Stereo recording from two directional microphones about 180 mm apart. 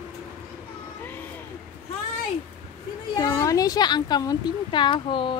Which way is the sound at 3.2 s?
20° left (ahead or behind).